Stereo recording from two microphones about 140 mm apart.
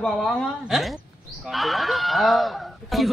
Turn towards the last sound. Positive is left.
turn(degrees=0)  # may be behind; listen again after turning